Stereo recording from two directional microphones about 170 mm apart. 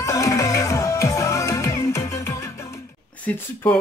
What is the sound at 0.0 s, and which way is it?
Music, 20° left (ahead or behind).